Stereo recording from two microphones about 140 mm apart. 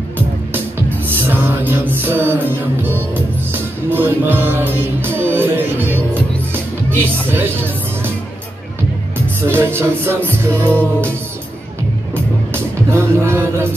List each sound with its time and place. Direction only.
0.5 s music: 15° right (ahead or behind)
7.3 s speech: 15° right (ahead or behind)
9.5 s music: 15° right (ahead or behind)
12.9 s music: 20° right (ahead or behind)